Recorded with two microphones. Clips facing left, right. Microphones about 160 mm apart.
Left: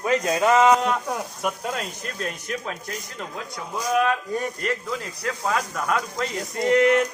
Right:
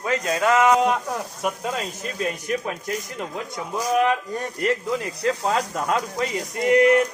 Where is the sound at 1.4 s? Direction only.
Centre (ahead or behind).